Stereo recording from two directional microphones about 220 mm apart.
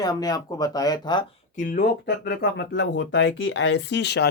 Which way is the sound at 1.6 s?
40° left (ahead or behind).